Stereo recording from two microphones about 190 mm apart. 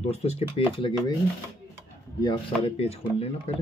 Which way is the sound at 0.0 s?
35° left (ahead or behind).